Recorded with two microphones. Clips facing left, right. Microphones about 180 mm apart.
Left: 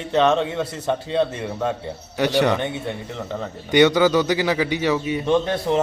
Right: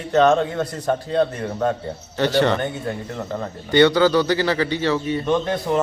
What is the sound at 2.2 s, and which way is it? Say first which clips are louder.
Speech: even; 10° left (ahead or behind).